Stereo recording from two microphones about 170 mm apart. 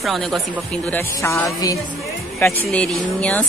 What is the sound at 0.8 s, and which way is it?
Speech, 15° left (ahead or behind).